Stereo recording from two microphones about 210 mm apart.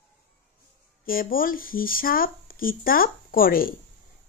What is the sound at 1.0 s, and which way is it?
Speech, 45° left (ahead or behind).